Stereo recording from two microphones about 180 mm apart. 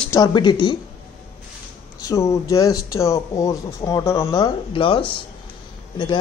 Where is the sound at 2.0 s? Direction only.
15° left (ahead or behind).